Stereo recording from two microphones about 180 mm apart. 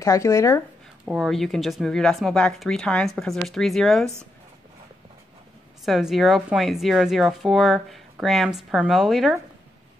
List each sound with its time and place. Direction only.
0.0 s speech: 15° left (ahead or behind)
1.0 s speech: centre (ahead or behind)
5.9 s speech: centre (ahead or behind)